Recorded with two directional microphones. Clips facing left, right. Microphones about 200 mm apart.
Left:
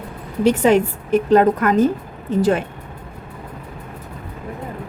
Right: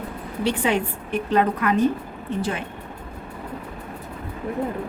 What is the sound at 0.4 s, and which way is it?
A woman's voice, 45° left (ahead or behind).